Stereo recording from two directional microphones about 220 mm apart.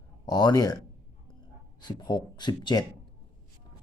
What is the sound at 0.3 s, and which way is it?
Speech, 20° left (ahead or behind).